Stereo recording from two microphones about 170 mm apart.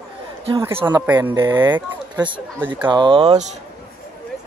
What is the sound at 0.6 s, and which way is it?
Speech, 15° right (ahead or behind).